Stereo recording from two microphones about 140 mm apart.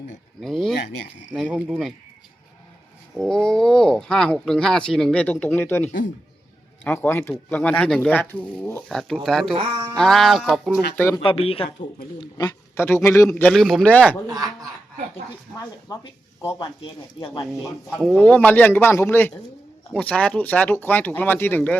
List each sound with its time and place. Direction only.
0.4 s speech: 5° left (ahead or behind)
3.2 s speech: 5° left (ahead or behind)
8.9 s speech: 5° left (ahead or behind)
10.9 s speech: 20° left (ahead or behind)
11.2 s speech: 40° left (ahead or behind)
12.7 s speech: 20° left (ahead or behind)
13.3 s speech: 5° left (ahead or behind)
13.8 s speech: 10° left (ahead or behind)
14.3 s speech: 25° right (ahead or behind)
15.1 s speech: 25° left (ahead or behind)
17.4 s speech: centre (ahead or behind)
18.2 s speech: 10° left (ahead or behind)